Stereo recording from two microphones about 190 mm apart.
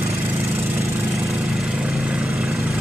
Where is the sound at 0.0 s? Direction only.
15° right (ahead or behind).